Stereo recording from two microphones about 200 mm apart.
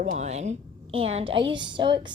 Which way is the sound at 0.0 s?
35° right (ahead or behind).